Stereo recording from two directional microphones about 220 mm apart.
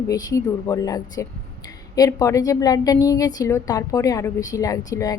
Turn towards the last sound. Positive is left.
turn(degrees=15)  # may be behind; listen again after turning